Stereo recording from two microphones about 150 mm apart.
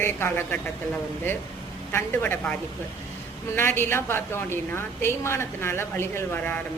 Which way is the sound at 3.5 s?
15° left (ahead or behind).